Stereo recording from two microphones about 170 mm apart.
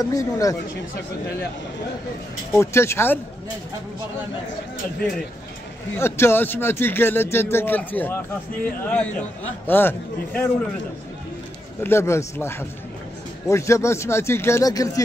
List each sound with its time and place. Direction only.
0.0 s speech: 20° left (ahead or behind)
2.5 s speech: 15° left (ahead or behind)
5.9 s speech: 15° left (ahead or behind)
11.8 s speech: 15° left (ahead or behind)